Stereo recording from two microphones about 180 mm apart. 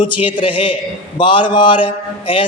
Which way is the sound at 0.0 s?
25° left (ahead or behind).